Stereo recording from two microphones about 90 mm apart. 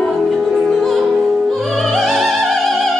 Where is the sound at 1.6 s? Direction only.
Centre (ahead or behind).